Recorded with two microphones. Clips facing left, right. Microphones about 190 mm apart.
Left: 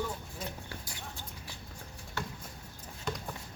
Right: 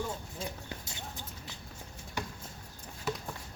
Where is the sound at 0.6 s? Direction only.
20° right (ahead or behind).